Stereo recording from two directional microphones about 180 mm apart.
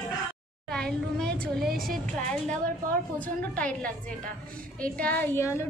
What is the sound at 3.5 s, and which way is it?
A woman's voice, 5° left (ahead or behind).